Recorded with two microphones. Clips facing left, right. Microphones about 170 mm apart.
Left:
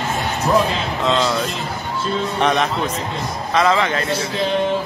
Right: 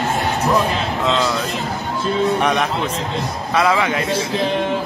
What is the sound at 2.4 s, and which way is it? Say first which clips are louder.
A man's voice: even; 10° right (ahead or behind).